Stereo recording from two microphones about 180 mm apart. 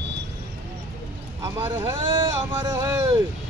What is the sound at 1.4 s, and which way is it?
Speech, 10° right (ahead or behind).